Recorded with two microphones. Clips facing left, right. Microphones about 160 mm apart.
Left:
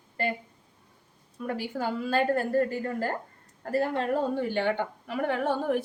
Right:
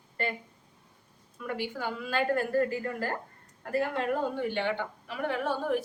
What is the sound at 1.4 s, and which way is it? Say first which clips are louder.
A woman's voice: left 3 dB; 40° left (ahead or behind).